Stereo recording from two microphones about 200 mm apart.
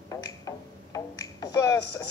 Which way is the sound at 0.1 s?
15° left (ahead or behind).